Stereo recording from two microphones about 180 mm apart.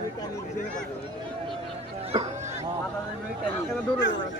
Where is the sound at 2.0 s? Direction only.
30° right (ahead or behind).